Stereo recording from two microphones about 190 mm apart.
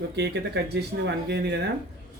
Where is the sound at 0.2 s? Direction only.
60° right (ahead or behind).